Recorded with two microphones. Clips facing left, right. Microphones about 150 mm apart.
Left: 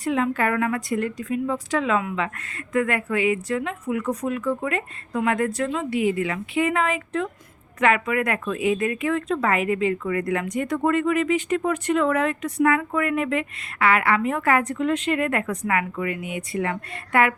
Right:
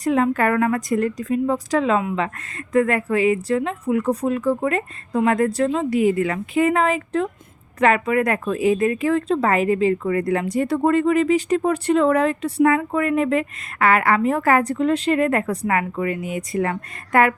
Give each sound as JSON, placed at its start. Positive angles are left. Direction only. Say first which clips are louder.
{"t": 0.0, "sound": "speech", "louder": "right 4 dB", "side_deg": -40}